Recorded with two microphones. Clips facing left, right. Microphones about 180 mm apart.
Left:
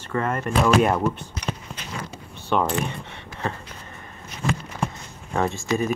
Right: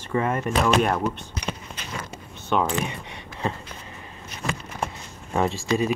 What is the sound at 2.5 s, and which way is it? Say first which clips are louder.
Speech: left 1 dB; 5° right (ahead or behind).